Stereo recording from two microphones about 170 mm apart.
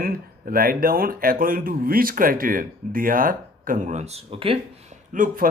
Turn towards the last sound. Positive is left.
turn(degrees=-55)  # may be behind; listen again after turning